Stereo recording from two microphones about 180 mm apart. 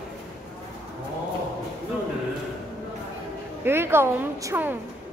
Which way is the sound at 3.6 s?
10° right (ahead or behind).